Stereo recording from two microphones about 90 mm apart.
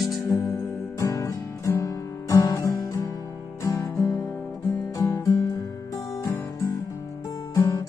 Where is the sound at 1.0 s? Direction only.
40° left (ahead or behind).